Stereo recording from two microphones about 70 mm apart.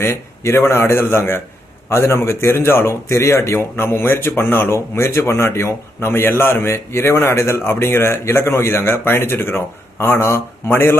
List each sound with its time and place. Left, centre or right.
0.0 s speech: left